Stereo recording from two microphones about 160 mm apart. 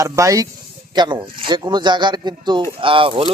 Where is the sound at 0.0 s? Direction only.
20° right (ahead or behind).